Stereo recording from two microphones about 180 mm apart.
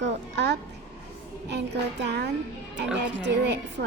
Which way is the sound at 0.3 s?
75° right (ahead or behind).